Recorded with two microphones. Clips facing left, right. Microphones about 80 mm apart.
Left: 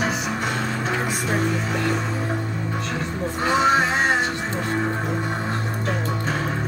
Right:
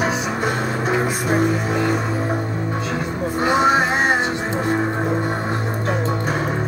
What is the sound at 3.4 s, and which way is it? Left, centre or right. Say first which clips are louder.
Music: right 2 dB; centre.